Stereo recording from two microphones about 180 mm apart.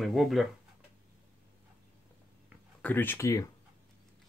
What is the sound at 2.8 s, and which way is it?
Speech, 10° left (ahead or behind).